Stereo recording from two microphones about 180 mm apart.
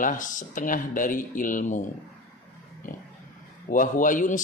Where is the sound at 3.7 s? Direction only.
45° left (ahead or behind).